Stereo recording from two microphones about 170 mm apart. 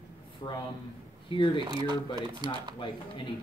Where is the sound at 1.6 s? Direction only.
25° right (ahead or behind).